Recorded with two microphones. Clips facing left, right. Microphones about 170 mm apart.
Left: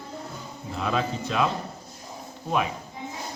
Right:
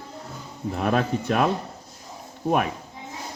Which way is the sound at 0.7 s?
55° right (ahead or behind).